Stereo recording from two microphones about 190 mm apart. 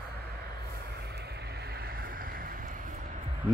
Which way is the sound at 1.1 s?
60° right (ahead or behind).